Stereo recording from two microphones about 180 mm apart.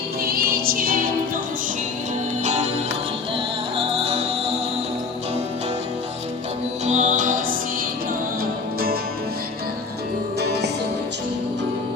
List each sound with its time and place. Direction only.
0.3 s music: 55° right (ahead or behind)
2.4 s music: 40° right (ahead or behind)
3.8 s music: 35° right (ahead or behind)
6.8 s music: 40° right (ahead or behind)
10.4 s music: 65° right (ahead or behind)